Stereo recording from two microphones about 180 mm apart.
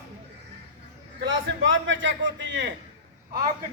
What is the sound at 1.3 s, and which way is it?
A man's voice, 90° right.